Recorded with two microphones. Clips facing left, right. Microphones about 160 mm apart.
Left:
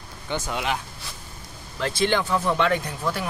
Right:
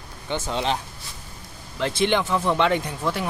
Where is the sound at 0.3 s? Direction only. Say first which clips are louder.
Right 2 dB; 25° right (ahead or behind).